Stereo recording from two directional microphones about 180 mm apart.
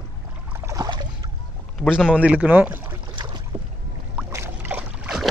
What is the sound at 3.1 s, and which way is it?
Boat, 25° right (ahead or behind).